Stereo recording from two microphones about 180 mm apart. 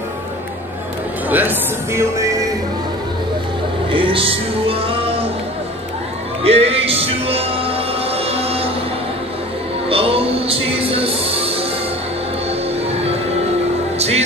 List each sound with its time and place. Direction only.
1.3 s speech: 10° right (ahead or behind)
3.9 s music: 30° right (ahead or behind)
6.4 s music: 35° right (ahead or behind)
9.8 s music: 30° right (ahead or behind)
13.9 s music: 35° right (ahead or behind)